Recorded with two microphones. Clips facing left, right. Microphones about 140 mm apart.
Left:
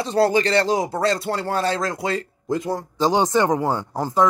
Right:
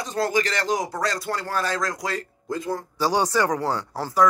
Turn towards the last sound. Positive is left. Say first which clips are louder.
# left 3 dB
turn(degrees=20)  # may be behind; listen again after turning